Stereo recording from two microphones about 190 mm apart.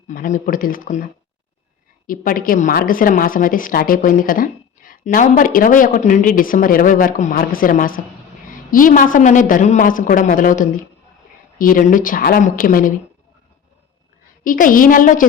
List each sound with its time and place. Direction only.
0.1 s a woman's voice: 45° left (ahead or behind)
2.0 s a woman's voice: 50° left (ahead or behind)
14.4 s a woman's voice: 45° left (ahead or behind)